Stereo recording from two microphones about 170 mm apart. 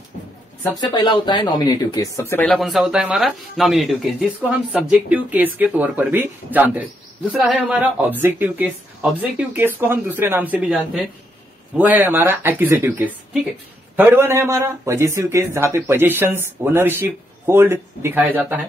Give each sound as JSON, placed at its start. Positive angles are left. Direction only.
{"t": 0.7, "sound": "speech", "side_deg": 25}
{"t": 2.5, "sound": "speech", "side_deg": 0}